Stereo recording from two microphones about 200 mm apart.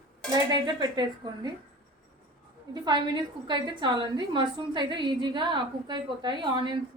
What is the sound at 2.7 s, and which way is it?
A woman's voice, 20° right (ahead or behind).